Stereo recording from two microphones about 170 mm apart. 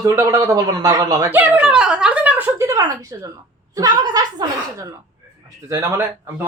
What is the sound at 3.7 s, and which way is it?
Speech, 20° right (ahead or behind).